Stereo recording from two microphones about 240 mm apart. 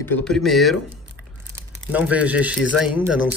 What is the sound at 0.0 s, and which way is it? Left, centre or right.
Speech, centre.